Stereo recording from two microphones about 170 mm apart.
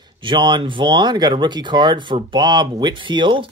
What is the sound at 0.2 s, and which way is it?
A man's voice, 25° right (ahead or behind).